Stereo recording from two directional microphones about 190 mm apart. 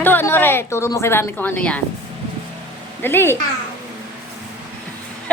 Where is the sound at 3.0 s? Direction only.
10° left (ahead or behind).